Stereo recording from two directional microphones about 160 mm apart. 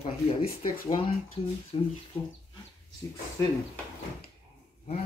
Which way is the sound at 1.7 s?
35° left (ahead or behind).